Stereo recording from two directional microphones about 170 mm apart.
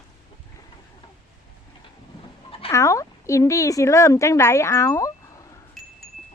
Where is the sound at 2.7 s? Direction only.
20° left (ahead or behind).